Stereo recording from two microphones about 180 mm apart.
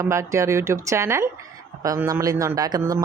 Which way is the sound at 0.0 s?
15° right (ahead or behind).